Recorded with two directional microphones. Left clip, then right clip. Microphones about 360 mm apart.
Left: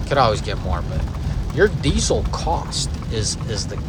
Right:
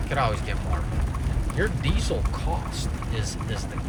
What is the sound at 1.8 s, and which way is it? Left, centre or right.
Speech, centre.